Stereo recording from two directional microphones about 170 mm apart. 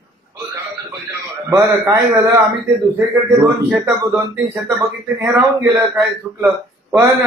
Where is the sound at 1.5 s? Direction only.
20° right (ahead or behind).